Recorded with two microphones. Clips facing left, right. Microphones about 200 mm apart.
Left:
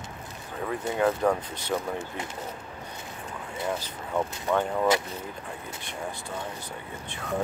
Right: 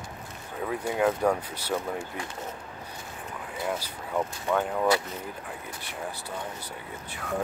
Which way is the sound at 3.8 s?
5° right (ahead or behind).